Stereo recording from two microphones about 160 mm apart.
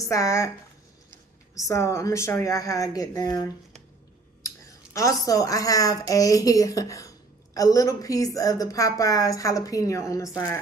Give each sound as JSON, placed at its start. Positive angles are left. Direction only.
{"t": 0.0, "sound": "speech", "side_deg": 20}
{"t": 1.5, "sound": "a woman's voice", "side_deg": 20}